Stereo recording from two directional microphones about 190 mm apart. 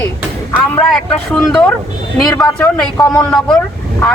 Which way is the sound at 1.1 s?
5° left (ahead or behind).